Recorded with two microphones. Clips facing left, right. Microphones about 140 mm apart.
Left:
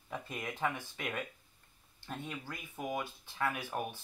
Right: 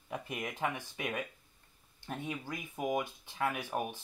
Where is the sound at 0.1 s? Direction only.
15° right (ahead or behind).